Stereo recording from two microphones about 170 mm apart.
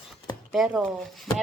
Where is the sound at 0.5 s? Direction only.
Centre (ahead or behind).